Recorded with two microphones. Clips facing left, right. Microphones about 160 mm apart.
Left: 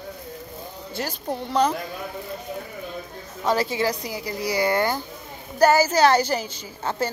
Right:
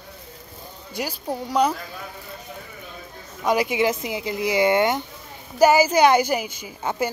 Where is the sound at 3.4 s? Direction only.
15° right (ahead or behind).